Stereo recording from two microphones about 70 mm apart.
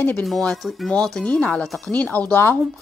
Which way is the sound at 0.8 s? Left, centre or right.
Centre.